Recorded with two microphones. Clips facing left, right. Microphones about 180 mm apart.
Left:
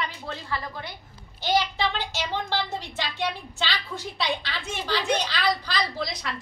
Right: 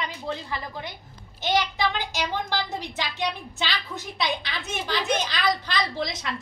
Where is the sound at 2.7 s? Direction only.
15° right (ahead or behind).